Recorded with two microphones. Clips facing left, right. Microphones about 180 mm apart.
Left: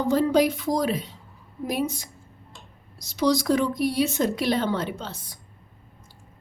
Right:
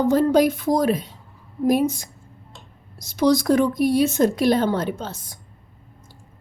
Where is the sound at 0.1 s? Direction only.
50° right (ahead or behind).